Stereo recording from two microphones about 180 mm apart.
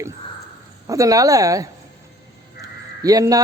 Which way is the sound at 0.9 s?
20° right (ahead or behind).